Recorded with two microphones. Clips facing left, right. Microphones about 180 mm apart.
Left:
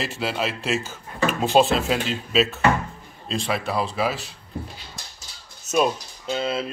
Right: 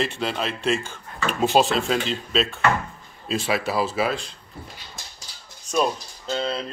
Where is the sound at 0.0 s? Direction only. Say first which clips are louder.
Right 1 dB; 5° left (ahead or behind).